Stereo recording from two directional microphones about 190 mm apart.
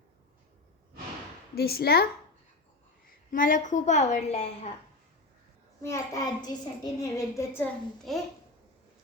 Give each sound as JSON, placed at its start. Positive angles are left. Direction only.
{"t": 1.5, "sound": "a woman's voice", "side_deg": 55}
{"t": 3.3, "sound": "a woman's voice", "side_deg": 45}
{"t": 5.8, "sound": "a child's voice", "side_deg": 15}
{"t": 8.1, "sound": "a child's voice", "side_deg": 0}